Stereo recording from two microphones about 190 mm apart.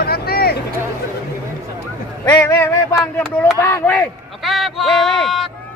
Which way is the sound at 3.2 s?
Centre (ahead or behind).